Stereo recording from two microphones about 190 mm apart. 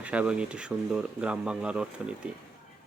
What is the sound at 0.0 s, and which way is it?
Speech, 5° right (ahead or behind).